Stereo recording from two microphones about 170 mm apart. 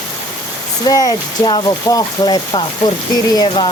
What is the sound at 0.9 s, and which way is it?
Speech, 20° left (ahead or behind).